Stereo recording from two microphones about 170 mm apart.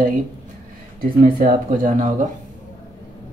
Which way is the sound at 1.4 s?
55° right (ahead or behind).